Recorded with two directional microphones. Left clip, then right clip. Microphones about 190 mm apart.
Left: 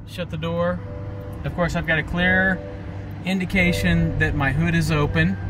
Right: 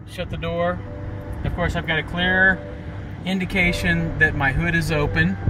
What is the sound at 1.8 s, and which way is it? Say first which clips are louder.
Speech: left 1 dB; 10° left (ahead or behind).